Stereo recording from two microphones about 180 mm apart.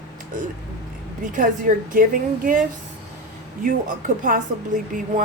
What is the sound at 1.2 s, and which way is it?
A woman's voice, 50° right (ahead or behind).